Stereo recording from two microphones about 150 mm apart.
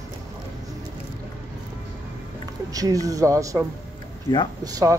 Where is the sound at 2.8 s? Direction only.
25° right (ahead or behind).